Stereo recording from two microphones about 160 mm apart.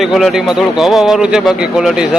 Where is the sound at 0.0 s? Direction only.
Centre (ahead or behind).